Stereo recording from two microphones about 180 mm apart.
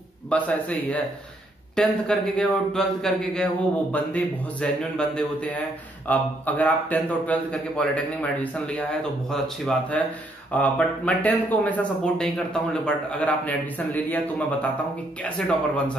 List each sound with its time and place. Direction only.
0.3 s a man's voice: 5° left (ahead or behind)